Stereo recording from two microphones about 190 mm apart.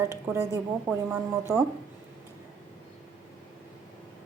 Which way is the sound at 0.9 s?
10° right (ahead or behind).